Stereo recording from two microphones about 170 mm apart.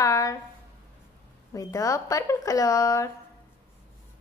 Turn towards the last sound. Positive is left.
turn(degrees=20)  # may be behind; listen again after turning